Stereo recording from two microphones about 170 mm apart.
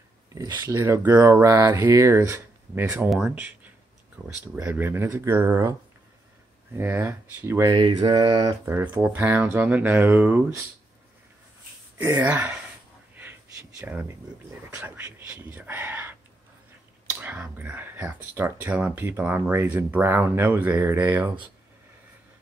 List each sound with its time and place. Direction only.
0.3 s speech: 20° right (ahead or behind)
3.1 s speech: centre (ahead or behind)
4.6 s speech: 15° right (ahead or behind)
7.7 s speech: 25° right (ahead or behind)
12.2 s speech: 10° right (ahead or behind)
13.1 s a sound: 15° right (ahead or behind)
14.6 s speech: 10° right (ahead or behind)